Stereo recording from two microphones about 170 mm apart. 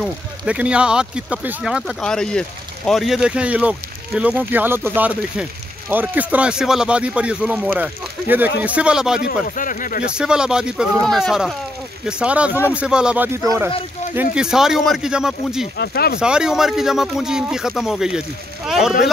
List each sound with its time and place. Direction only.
0.0 s speech: 5° right (ahead or behind)
9.6 s speech: 50° left (ahead or behind)
10.1 s speech: 5° right (ahead or behind)
14.3 s speech: 5° right (ahead or behind)
15.8 s speech: 65° left (ahead or behind)
16.2 s speech: 5° right (ahead or behind)